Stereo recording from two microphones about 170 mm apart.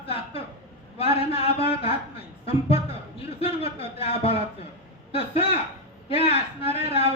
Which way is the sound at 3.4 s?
35° left (ahead or behind).